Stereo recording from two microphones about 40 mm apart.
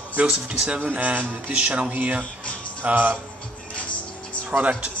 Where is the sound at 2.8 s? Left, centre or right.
Right.